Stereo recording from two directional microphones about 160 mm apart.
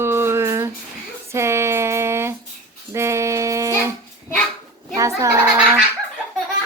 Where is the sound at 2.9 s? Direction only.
15° right (ahead or behind).